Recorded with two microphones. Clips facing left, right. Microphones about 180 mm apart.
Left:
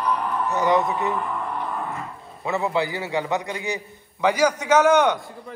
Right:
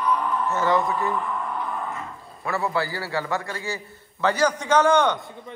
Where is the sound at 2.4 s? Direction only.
20° left (ahead or behind).